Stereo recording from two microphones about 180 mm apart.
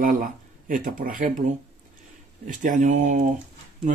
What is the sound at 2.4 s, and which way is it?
Speech, 45° right (ahead or behind).